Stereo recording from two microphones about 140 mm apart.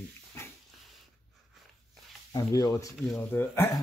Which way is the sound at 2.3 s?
25° left (ahead or behind).